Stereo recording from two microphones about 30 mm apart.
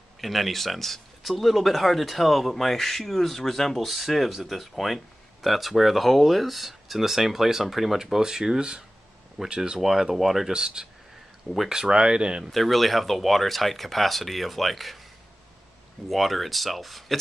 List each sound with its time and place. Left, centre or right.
0.2 s speech: centre
8.2 s speech: right
9.4 s speech: centre
10.5 s speech: right
11.5 s speech: centre
11.9 s speech: right
12.4 s speech: centre
16.1 s speech: centre